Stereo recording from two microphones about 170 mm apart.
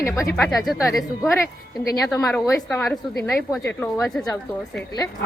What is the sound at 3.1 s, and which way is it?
Speech, centre (ahead or behind).